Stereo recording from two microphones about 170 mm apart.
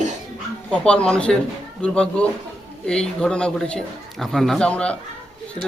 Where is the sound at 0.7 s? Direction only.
5° left (ahead or behind).